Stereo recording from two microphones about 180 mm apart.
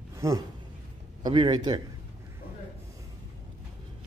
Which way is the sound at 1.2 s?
25° right (ahead or behind).